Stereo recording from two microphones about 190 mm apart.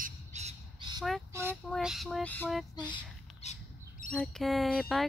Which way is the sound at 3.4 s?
35° left (ahead or behind).